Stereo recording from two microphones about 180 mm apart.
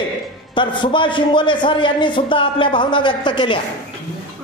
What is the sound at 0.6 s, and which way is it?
Speech, 25° left (ahead or behind).